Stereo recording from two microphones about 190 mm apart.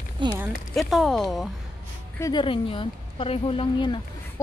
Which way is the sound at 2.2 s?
25° left (ahead or behind).